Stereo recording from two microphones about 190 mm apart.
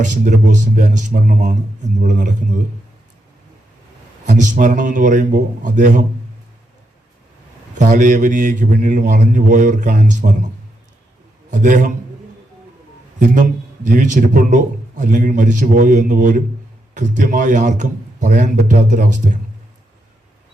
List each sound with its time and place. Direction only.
0.0 s a man's voice: 40° right (ahead or behind)
4.3 s a man's voice: 40° right (ahead or behind)
7.8 s a man's voice: 45° right (ahead or behind)
11.5 s speech: 40° right (ahead or behind)
13.1 s a man's voice: 40° right (ahead or behind)